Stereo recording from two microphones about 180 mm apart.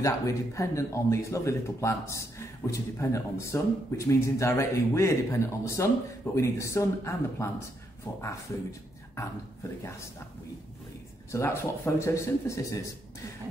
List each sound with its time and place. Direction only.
0.0 s speech: 15° left (ahead or behind)
11.3 s speech: 15° left (ahead or behind)